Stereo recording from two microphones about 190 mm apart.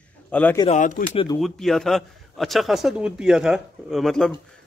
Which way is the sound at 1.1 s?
25° left (ahead or behind).